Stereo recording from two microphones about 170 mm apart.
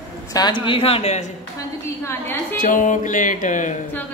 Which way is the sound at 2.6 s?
50° left (ahead or behind).